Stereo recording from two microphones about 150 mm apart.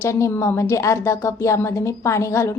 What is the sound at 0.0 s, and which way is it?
A woman's voice, 20° left (ahead or behind).